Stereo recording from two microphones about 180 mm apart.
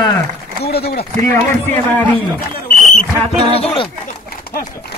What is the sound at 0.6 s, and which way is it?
Speech, 60° left (ahead or behind).